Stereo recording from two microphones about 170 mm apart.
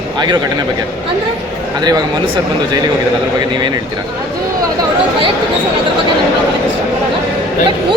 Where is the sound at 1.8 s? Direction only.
25° right (ahead or behind).